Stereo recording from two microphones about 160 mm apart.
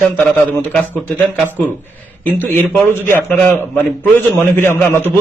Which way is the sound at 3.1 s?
10° left (ahead or behind).